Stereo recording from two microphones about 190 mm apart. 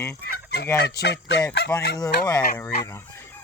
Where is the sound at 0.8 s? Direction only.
60° left (ahead or behind).